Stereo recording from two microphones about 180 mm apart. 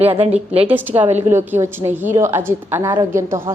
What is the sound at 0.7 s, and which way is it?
A woman's voice, 10° right (ahead or behind).